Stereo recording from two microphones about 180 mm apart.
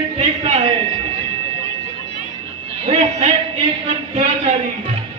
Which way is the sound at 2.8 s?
35° right (ahead or behind).